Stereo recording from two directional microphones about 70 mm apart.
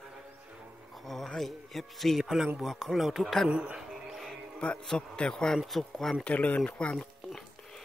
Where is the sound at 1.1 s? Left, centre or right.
Centre.